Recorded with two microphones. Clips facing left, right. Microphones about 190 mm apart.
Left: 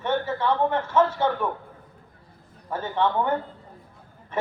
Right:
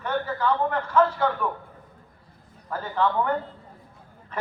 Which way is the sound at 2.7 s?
25° left (ahead or behind).